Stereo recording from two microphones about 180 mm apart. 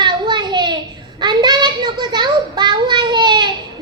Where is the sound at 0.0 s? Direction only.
25° right (ahead or behind).